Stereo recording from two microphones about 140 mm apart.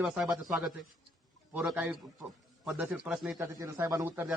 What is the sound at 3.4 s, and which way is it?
Speech, 20° right (ahead or behind).